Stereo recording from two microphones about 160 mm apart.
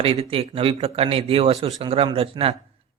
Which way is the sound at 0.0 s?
40° right (ahead or behind).